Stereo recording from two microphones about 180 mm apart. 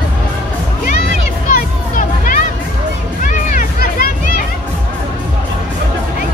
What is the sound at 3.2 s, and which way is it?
Children playing, 45° left (ahead or behind).